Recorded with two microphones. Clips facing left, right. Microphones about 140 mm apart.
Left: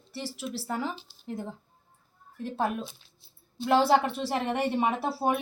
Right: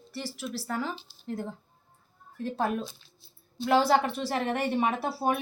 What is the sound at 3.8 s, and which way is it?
Speech, 25° left (ahead or behind).